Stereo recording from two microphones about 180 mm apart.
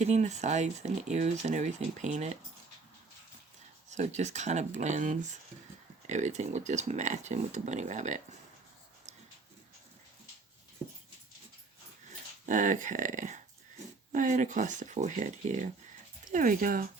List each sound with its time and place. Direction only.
0.0 s speech: 40° right (ahead or behind)
3.8 s speech: 40° right (ahead or behind)
12.5 s speech: 45° right (ahead or behind)